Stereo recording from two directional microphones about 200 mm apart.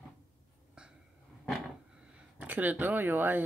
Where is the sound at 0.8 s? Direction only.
5° right (ahead or behind).